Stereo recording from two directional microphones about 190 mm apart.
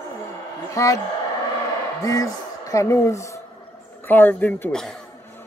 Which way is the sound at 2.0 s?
15° left (ahead or behind).